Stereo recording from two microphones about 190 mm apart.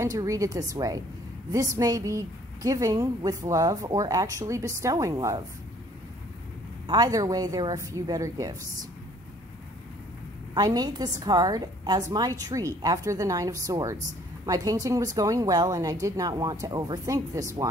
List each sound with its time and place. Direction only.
0.0 s a woman's voice: 15° right (ahead or behind)
6.9 s a woman's voice: 20° right (ahead or behind)
10.5 s a woman's voice: 20° right (ahead or behind)